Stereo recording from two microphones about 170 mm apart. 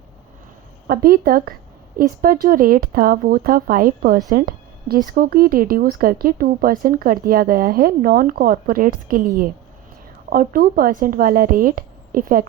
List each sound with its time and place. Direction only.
0.9 s speech: 60° right (ahead or behind)